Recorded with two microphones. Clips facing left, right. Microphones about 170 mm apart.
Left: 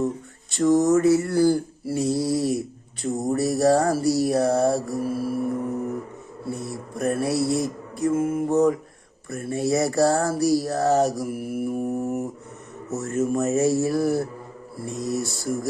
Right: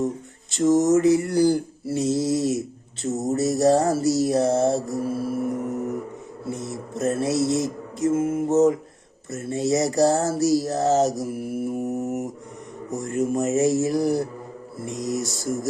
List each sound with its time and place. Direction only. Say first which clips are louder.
0.5 s mantra: even; 20° right (ahead or behind)
12.9 s speech: even; 15° right (ahead or behind)
14.8 s mantra: even; 20° right (ahead or behind)